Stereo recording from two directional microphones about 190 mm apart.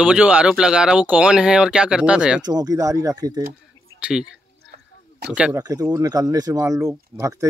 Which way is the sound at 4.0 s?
5° right (ahead or behind).